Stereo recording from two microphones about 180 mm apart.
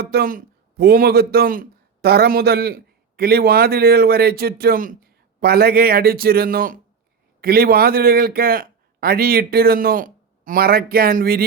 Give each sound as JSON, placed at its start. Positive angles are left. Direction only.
{"t": 0.0, "sound": "speech", "side_deg": -60}